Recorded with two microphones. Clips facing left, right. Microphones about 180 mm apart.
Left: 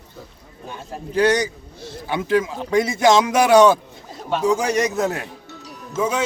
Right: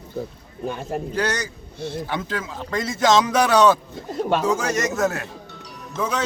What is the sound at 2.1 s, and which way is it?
A man's voice, 15° left (ahead or behind).